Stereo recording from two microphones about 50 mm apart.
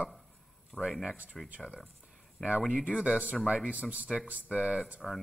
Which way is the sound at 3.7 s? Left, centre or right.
Right.